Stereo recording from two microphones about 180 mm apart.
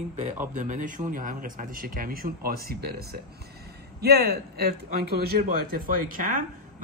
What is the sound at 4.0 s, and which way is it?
Speech, 60° right (ahead or behind).